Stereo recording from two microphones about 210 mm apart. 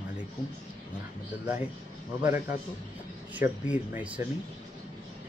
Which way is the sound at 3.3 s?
5° right (ahead or behind).